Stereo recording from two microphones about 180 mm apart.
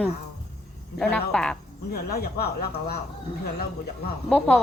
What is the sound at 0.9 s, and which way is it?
Speech, 5° left (ahead or behind).